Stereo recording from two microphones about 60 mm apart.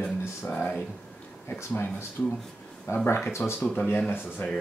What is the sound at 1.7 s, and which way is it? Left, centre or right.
Speech, left.